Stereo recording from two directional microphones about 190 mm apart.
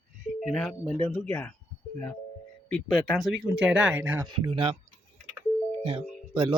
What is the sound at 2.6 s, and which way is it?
Speech, centre (ahead or behind).